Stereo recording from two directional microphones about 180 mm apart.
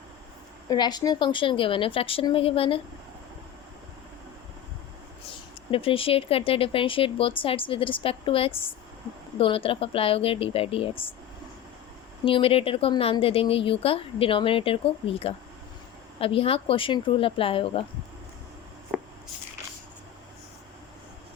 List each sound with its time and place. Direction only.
0.7 s a woman's voice: 25° left (ahead or behind)
5.7 s speech: 30° left (ahead or behind)
12.2 s speech: 30° left (ahead or behind)
18.9 s a sound: 10° right (ahead or behind)